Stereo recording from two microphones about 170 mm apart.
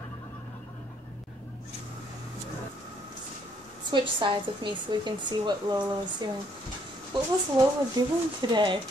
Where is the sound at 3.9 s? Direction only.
30° right (ahead or behind).